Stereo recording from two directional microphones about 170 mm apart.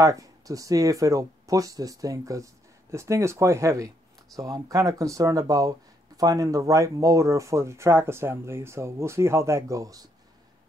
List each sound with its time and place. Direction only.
0.0 s speech: 20° right (ahead or behind)